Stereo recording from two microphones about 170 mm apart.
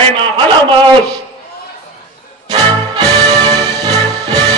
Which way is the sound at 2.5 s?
25° right (ahead or behind).